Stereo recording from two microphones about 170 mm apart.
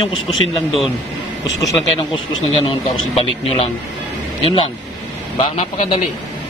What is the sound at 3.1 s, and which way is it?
Speech, 35° left (ahead or behind).